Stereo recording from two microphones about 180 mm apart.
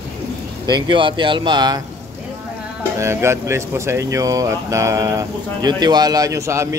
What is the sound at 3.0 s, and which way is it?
Speech, 15° right (ahead or behind).